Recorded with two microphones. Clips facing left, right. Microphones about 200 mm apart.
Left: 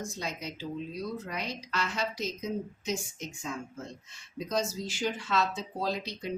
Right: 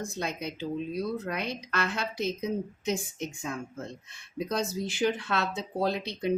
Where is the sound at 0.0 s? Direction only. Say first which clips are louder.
Right 3 dB; 60° right (ahead or behind).